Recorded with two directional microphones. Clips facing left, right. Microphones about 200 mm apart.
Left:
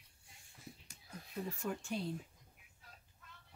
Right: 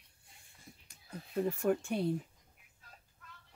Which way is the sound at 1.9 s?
60° right (ahead or behind).